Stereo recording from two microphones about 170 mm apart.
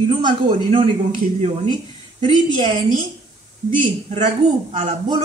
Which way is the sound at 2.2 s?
30° right (ahead or behind).